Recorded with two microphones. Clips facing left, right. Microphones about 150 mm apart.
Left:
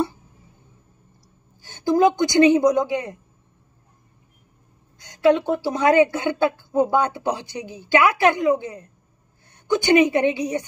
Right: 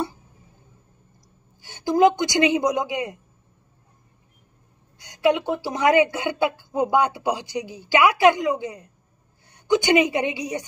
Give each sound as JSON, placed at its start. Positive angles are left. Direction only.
{"t": 1.6, "sound": "a man's voice", "side_deg": -15}
{"t": 5.0, "sound": "a woman's voice", "side_deg": -15}